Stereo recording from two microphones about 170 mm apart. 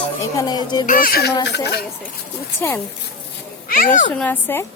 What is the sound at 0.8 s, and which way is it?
Speech, 55° left (ahead or behind).